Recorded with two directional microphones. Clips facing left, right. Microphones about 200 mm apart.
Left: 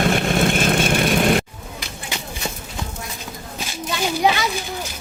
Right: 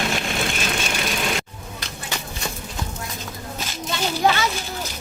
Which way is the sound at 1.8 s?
10° left (ahead or behind).